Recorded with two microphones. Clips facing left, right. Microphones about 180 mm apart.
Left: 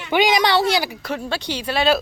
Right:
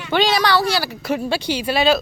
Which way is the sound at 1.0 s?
10° right (ahead or behind).